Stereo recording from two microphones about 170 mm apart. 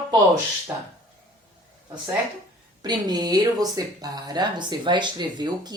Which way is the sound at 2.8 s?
25° right (ahead or behind).